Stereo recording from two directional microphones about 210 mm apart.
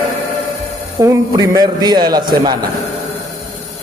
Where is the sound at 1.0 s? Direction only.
15° right (ahead or behind).